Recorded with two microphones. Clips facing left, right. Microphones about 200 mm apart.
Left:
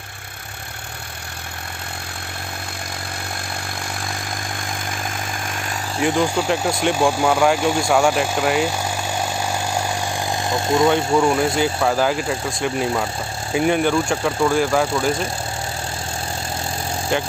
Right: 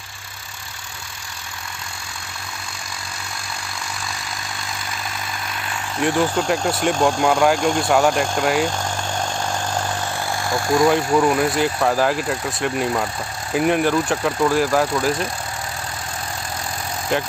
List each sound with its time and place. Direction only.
5.9 s speech: centre (ahead or behind)
9.5 s vehicle: 10° left (ahead or behind)
10.9 s speech: centre (ahead or behind)
17.1 s speech: centre (ahead or behind)